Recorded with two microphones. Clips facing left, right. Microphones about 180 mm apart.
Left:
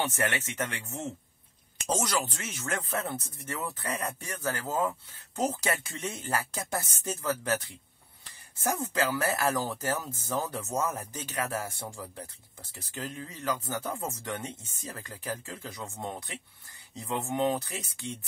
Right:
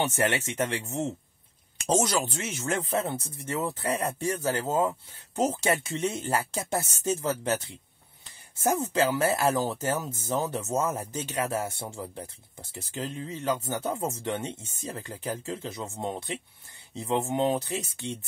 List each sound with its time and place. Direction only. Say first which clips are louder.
0.0 s speech: right 4 dB; 30° right (ahead or behind)
8.6 s speech: right 4 dB; 25° right (ahead or behind)